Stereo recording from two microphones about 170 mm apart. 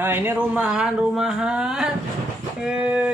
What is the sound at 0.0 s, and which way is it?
Speech, 15° right (ahead or behind).